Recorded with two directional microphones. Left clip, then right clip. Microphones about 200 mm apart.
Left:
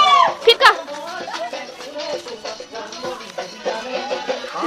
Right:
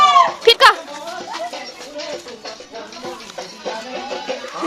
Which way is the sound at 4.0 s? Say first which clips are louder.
Left 2 dB; 10° left (ahead or behind).